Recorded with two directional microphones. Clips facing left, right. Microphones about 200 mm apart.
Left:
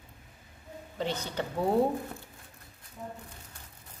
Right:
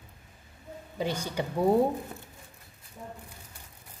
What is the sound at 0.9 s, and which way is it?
Speech, 10° right (ahead or behind).